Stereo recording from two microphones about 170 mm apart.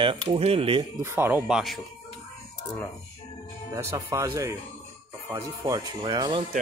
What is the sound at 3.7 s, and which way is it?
Speech, 15° right (ahead or behind).